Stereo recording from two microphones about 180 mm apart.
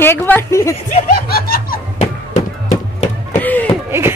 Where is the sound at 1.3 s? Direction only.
55° left (ahead or behind).